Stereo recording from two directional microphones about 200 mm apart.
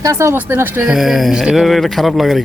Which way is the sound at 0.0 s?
15° right (ahead or behind).